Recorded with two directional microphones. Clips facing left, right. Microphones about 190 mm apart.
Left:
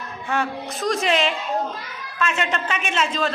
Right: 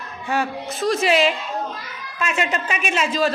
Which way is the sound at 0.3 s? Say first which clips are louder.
Right 1 dB; 5° right (ahead or behind).